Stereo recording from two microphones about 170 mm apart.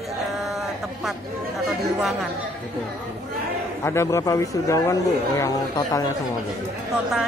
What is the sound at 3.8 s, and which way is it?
Speech, 15° left (ahead or behind).